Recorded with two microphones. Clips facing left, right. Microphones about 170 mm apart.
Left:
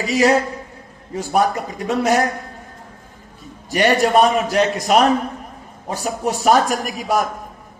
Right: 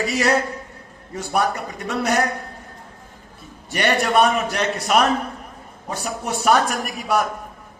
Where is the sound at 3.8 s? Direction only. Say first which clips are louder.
Left 3 dB; 35° left (ahead or behind).